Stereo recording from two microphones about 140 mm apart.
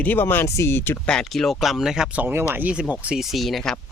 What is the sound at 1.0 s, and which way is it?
Speech, 5° left (ahead or behind).